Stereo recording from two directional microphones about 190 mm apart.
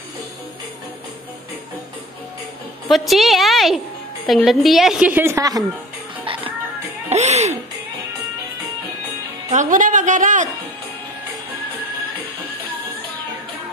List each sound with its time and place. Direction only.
2.9 s a woman's voice: centre (ahead or behind); by 5.6 s 15° right (ahead or behind)
6.2 s music: 25° right (ahead or behind)
9.5 s speech: 40° right (ahead or behind)